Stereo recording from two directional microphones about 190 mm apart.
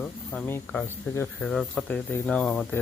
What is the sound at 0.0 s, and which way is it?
Speech, 5° left (ahead or behind).